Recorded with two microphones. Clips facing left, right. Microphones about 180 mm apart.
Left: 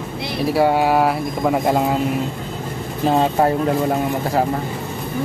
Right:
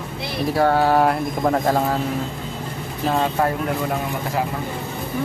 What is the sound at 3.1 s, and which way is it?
Speech, 25° left (ahead or behind).